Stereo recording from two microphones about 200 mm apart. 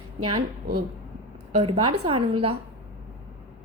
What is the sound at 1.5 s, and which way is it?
Speech, 30° right (ahead or behind).